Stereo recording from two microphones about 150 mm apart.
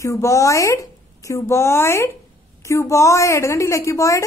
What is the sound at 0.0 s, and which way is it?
A woman's voice, 20° left (ahead or behind).